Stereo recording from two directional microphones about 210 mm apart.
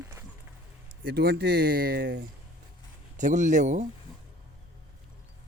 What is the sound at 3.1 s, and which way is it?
Speech, 35° right (ahead or behind).